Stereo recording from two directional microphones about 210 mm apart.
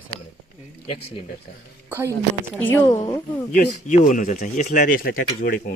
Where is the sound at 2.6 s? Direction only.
10° left (ahead or behind).